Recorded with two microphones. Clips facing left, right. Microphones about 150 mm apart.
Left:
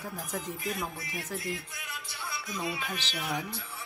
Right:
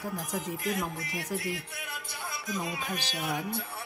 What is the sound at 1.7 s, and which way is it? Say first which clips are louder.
Music: right 2 dB; 50° right (ahead or behind).